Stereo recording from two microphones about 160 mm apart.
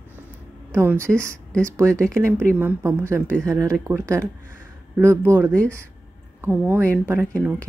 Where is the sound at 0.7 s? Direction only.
15° right (ahead or behind).